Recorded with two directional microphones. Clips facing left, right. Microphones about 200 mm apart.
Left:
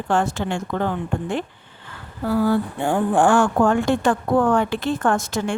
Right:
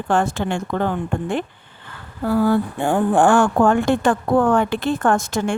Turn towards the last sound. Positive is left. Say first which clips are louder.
# right 2 dB
turn(degrees=-50)  # may be behind; listen again after turning